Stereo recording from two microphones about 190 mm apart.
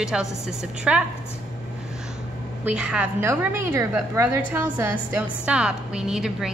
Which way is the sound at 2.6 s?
5° right (ahead or behind).